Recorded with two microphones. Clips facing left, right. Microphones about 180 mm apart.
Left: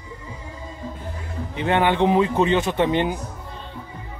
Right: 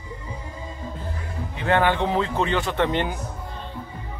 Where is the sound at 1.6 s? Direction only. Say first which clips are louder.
Left 2 dB; 20° left (ahead or behind).